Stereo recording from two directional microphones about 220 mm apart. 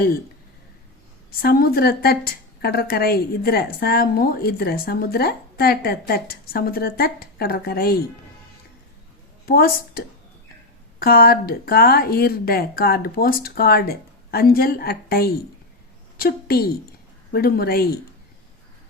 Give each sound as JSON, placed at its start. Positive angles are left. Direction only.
{"t": 1.4, "sound": "a woman's voice", "side_deg": 45}
{"t": 9.5, "sound": "a woman's voice", "side_deg": 40}
{"t": 11.0, "sound": "a woman's voice", "side_deg": 45}